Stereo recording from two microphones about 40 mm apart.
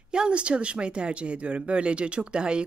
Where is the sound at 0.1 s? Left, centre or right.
Right.